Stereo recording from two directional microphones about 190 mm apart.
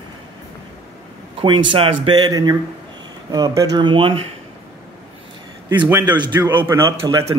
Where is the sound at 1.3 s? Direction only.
25° right (ahead or behind).